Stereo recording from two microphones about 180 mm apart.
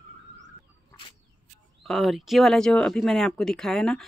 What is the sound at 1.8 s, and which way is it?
Speech, centre (ahead or behind).